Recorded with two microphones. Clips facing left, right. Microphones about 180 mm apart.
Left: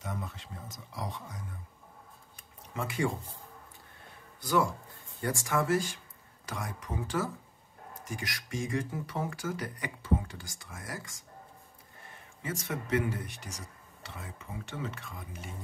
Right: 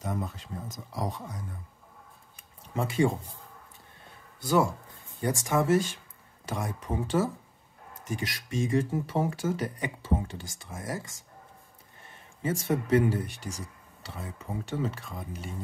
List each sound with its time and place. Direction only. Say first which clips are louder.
0.0 s speech: right 6 dB; 40° right (ahead or behind)
2.7 s speech: right 6 dB; 30° right (ahead or behind)
4.4 s speech: right 3 dB; 25° right (ahead or behind)
12.4 s speech: right 8 dB; 30° right (ahead or behind)